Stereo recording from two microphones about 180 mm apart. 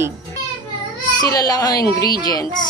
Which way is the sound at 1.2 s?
20° left (ahead or behind).